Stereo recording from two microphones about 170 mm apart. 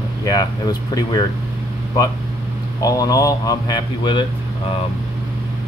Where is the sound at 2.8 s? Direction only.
20° left (ahead or behind).